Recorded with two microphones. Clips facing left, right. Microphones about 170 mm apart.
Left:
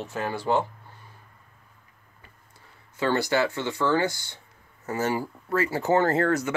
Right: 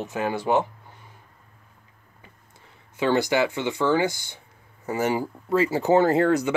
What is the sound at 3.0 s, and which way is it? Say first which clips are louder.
Speech: right 2 dB; 15° right (ahead or behind).